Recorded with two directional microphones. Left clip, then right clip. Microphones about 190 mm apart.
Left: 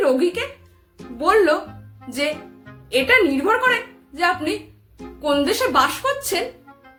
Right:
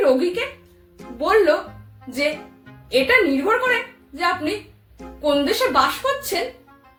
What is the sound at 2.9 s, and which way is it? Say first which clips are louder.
A woman's voice: even; 15° left (ahead or behind).